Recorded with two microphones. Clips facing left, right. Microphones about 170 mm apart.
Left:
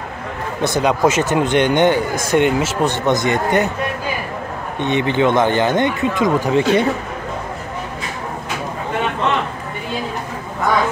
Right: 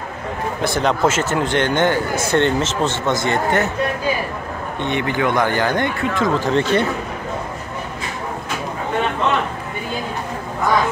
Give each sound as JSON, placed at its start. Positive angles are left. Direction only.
{"t": 0.6, "sound": "speech", "side_deg": 15}
{"t": 4.7, "sound": "speech", "side_deg": 20}